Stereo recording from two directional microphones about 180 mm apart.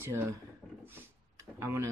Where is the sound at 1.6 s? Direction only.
15° right (ahead or behind).